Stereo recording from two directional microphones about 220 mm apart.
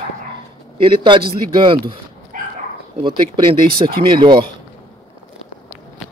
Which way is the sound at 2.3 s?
35° right (ahead or behind).